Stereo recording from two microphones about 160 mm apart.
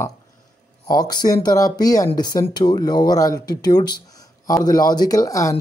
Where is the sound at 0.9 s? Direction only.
25° left (ahead or behind).